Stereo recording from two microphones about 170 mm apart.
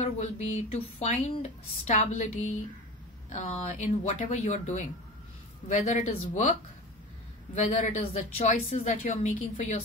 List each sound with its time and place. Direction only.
0.0 s speech: 45° left (ahead or behind)
7.5 s speech: 40° left (ahead or behind)